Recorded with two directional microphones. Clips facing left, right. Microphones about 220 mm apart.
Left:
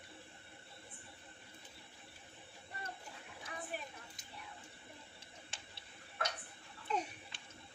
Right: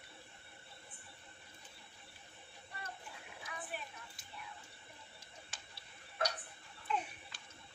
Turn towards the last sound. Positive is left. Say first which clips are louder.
# left 1 dB
turn(degrees=40)  # may be behind; listen again after turning